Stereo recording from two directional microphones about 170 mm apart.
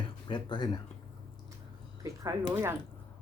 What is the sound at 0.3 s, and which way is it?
Speech, 25° left (ahead or behind).